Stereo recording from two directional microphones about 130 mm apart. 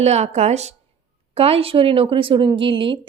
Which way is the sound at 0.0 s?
60° right (ahead or behind).